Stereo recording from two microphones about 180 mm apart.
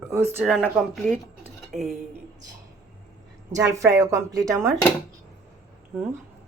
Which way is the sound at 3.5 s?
15° right (ahead or behind).